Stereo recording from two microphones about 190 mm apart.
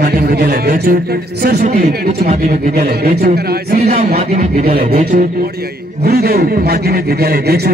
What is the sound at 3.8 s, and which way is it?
Speech, 35° right (ahead or behind).